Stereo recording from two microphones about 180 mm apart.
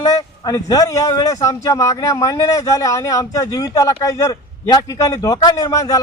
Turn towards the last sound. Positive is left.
turn(degrees=20)  # may be behind; listen again after turning